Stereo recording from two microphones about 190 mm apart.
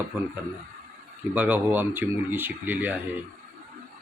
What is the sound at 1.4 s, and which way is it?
Speech, 10° right (ahead or behind).